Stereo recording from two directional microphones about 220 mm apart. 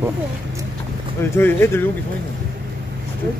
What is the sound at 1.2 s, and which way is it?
Speech, 10° left (ahead or behind).